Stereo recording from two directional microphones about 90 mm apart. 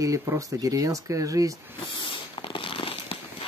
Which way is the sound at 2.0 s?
70° left (ahead or behind).